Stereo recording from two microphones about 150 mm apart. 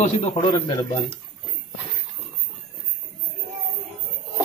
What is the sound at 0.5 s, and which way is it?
Speech, 20° left (ahead or behind).